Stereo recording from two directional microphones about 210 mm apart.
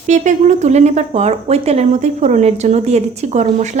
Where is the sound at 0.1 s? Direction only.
35° right (ahead or behind).